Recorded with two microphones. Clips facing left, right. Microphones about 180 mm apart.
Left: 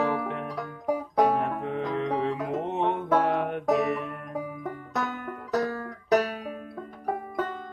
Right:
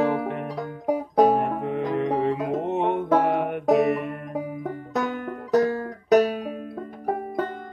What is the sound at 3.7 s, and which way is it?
Music, 55° right (ahead or behind).